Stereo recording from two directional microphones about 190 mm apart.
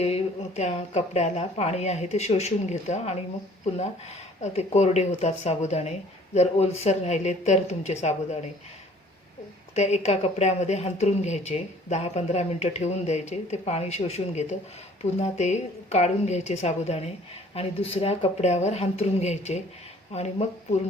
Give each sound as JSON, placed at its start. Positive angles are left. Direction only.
{"t": 0.0, "sound": "a woman's voice", "side_deg": 35}
{"t": 4.4, "sound": "a woman's voice", "side_deg": 35}
{"t": 9.7, "sound": "a woman's voice", "side_deg": 35}